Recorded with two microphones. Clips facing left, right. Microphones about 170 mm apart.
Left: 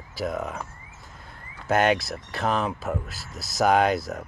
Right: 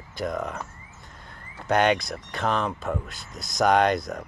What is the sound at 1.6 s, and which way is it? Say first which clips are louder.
Speech: even; 5° left (ahead or behind).